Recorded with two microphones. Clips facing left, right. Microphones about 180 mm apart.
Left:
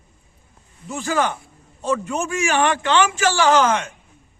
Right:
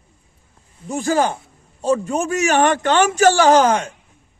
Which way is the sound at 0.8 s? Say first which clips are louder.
Right 4 dB; 35° right (ahead or behind).